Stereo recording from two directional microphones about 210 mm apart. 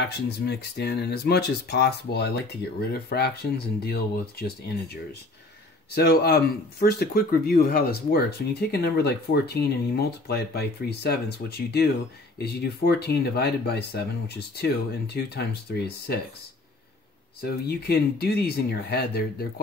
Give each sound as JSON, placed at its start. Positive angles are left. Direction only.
{"t": 0.0, "sound": "speech", "side_deg": 50}
{"t": 17.4, "sound": "speech", "side_deg": 50}